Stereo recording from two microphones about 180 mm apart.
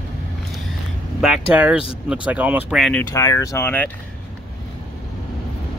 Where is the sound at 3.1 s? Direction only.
15° left (ahead or behind).